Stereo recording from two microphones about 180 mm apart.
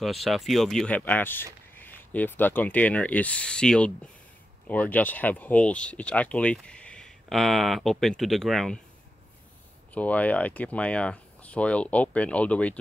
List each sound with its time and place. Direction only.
0.0 s speech: centre (ahead or behind)
9.9 s speech: 10° left (ahead or behind)